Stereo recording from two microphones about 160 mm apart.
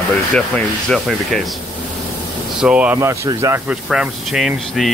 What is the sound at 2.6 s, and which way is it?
Speech, 5° right (ahead or behind).